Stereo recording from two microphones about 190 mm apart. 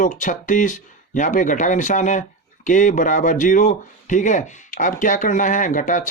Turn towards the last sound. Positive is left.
turn(degrees=45)  # may be behind; listen again after turning